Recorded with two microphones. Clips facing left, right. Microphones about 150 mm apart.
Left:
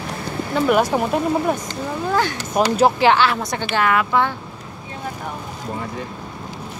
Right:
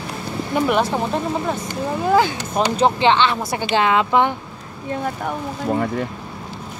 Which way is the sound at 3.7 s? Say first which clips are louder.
Right 2 dB; 20° right (ahead or behind).